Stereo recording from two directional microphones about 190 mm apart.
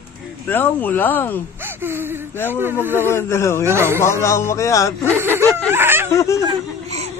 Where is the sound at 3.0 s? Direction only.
10° left (ahead or behind).